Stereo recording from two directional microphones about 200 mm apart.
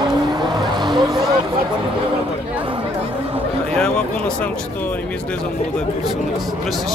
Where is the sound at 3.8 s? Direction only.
5° left (ahead or behind).